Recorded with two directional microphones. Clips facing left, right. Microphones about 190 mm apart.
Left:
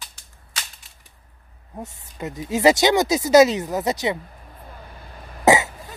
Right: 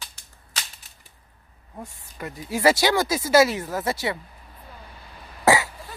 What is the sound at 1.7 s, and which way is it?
Speech, 20° left (ahead or behind).